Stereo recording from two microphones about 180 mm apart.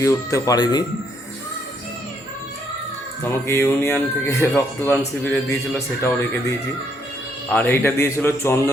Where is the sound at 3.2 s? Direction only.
15° left (ahead or behind).